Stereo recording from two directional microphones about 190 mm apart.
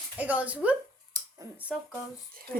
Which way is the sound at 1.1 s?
20° right (ahead or behind).